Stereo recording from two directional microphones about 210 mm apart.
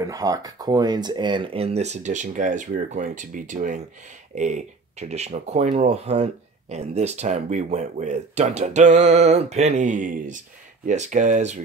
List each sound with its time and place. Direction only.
0.0 s speech: 15° right (ahead or behind); by 11.6 s 35° right (ahead or behind)